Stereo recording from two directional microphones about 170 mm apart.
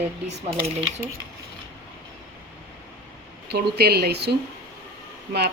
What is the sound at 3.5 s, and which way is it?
Speech, 70° right (ahead or behind).